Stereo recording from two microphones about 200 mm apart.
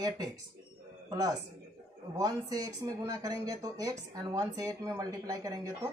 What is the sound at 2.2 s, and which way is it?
Speech, 20° right (ahead or behind).